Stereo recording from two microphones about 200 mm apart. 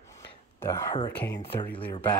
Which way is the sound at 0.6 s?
15° left (ahead or behind).